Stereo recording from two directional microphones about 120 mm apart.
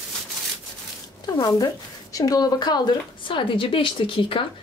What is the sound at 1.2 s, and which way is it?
A woman's voice, 35° left (ahead or behind).